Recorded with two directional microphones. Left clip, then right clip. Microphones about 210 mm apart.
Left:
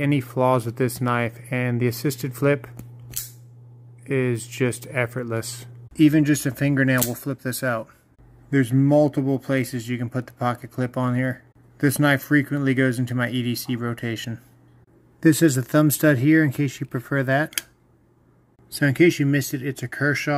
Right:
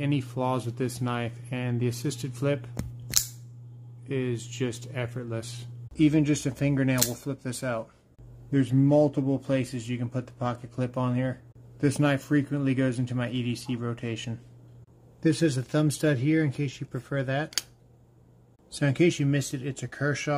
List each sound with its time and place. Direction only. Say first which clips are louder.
0.0 s speech: left 8 dB; 25° left (ahead or behind)
4.0 s speech: left 7 dB; 25° left (ahead or behind)
18.7 s speech: left 6 dB; 15° left (ahead or behind)